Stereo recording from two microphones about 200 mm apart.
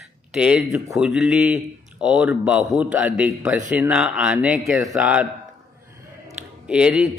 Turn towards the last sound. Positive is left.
turn(degrees=-5)  # may be behind; listen again after turning